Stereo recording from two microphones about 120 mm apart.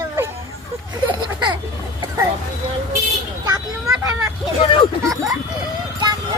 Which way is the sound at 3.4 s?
30° right (ahead or behind).